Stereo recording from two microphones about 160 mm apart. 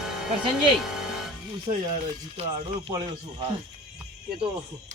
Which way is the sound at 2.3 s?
35° right (ahead or behind).